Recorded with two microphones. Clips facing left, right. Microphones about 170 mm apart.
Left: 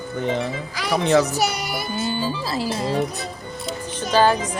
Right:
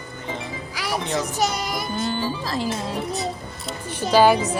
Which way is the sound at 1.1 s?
70° left (ahead or behind).